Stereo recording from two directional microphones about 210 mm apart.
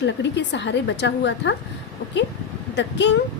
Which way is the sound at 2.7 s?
55° left (ahead or behind).